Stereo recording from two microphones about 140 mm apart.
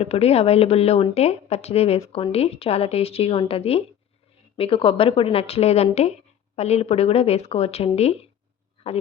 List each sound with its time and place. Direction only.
0.0 s speech: 45° left (ahead or behind)